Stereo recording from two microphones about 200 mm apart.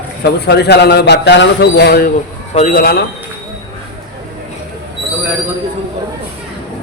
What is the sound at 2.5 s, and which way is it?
Speech, 35° left (ahead or behind).